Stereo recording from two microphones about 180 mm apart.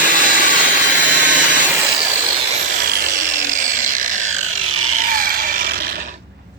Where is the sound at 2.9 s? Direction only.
45° right (ahead or behind).